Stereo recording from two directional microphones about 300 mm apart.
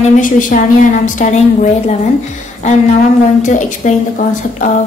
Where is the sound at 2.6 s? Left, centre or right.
Left.